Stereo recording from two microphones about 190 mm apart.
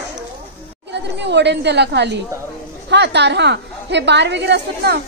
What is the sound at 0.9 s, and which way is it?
A woman's voice, 65° right (ahead or behind).